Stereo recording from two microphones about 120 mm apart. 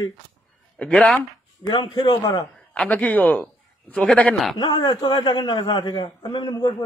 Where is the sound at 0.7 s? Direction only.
5° left (ahead or behind).